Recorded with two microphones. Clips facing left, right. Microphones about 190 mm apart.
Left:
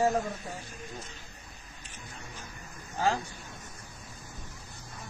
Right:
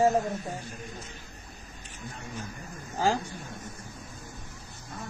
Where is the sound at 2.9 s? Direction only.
35° right (ahead or behind).